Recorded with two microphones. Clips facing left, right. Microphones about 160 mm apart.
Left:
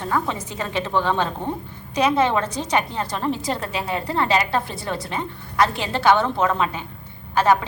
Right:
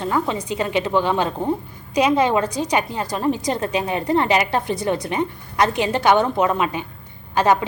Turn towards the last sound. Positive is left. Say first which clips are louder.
# right 1 dB
turn(degrees=-15)  # may be behind; listen again after turning